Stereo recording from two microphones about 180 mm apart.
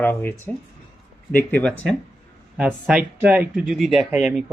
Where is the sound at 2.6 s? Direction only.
5° right (ahead or behind).